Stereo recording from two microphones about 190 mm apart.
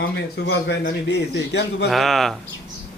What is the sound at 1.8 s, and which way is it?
Speech, centre (ahead or behind).